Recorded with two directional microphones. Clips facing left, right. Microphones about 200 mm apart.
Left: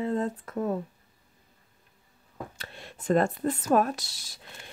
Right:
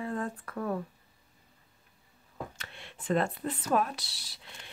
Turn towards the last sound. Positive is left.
turn(degrees=45)  # may be behind; listen again after turning